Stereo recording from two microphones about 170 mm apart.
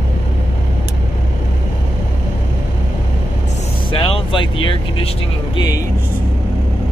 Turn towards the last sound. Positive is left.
turn(degrees=20)  # may be behind; listen again after turning